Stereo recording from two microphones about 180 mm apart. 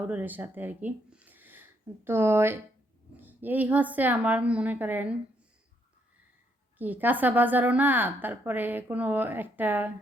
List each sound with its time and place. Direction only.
0.1 s a woman's voice: 10° right (ahead or behind)
6.7 s a woman's voice: 10° right (ahead or behind)